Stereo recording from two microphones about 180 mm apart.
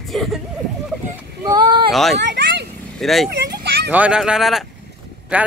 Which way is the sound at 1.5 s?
25° right (ahead or behind).